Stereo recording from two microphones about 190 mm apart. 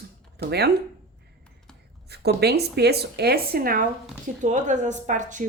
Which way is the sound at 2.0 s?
60° right (ahead or behind).